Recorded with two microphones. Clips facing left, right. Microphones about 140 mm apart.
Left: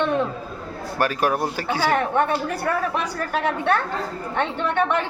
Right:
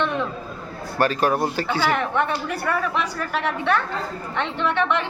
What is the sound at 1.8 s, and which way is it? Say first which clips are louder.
A woman's voice: left 3 dB; 40° left (ahead or behind).